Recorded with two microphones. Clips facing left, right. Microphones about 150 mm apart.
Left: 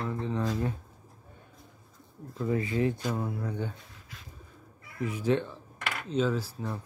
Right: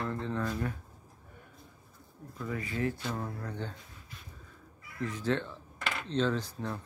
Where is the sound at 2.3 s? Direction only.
25° left (ahead or behind); by 3.7 s 10° left (ahead or behind).